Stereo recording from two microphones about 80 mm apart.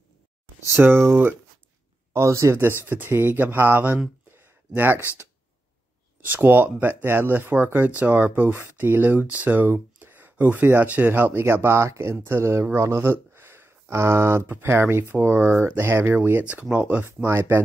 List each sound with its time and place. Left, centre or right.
0.7 s speech: right
2.8 s speech: right
4.3 s a sound: right
6.2 s speech: right